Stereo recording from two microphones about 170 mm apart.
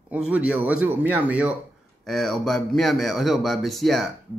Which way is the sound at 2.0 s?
Centre (ahead or behind).